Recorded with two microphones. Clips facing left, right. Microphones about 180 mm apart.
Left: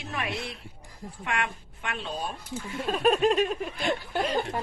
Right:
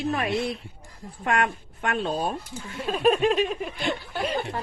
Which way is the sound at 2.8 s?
Centre (ahead or behind).